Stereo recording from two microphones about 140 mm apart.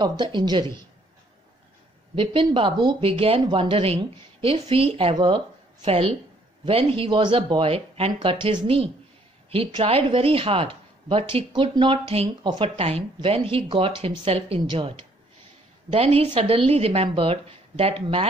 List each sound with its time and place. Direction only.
0.0 s speech: 30° right (ahead or behind)
2.1 s speech: 35° right (ahead or behind)